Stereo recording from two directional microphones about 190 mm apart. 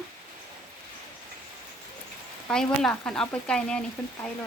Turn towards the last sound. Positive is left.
turn(degrees=5)  # may be behind; listen again after turning